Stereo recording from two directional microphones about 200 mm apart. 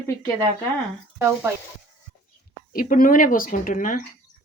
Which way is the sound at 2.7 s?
45° left (ahead or behind).